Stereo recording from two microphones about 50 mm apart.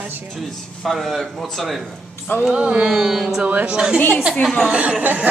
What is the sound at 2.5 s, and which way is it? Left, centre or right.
Speech, right.